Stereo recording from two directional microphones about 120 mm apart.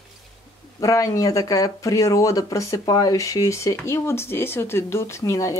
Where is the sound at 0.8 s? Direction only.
25° left (ahead or behind).